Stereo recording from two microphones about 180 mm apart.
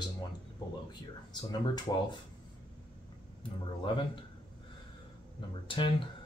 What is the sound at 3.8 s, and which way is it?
Speech, 30° left (ahead or behind).